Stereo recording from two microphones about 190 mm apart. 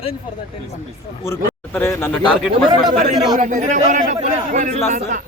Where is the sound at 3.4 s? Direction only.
40° right (ahead or behind).